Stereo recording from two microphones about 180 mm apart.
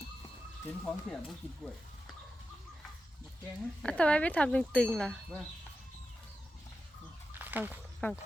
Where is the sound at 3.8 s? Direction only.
5° left (ahead or behind).